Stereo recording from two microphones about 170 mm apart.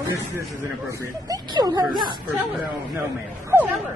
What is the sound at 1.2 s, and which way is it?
Speech, 20° right (ahead or behind).